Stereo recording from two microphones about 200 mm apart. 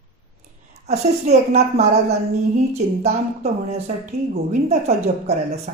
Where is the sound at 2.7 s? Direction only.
35° right (ahead or behind).